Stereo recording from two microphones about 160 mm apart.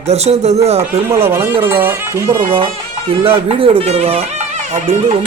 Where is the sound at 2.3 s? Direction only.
30° right (ahead or behind).